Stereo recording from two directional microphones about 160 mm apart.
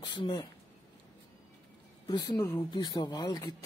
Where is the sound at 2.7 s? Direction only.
25° left (ahead or behind).